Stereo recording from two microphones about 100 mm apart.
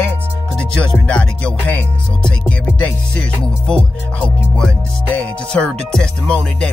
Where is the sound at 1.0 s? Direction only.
10° left (ahead or behind).